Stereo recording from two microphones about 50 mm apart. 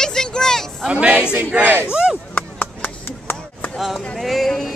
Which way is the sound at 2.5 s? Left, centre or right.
Left.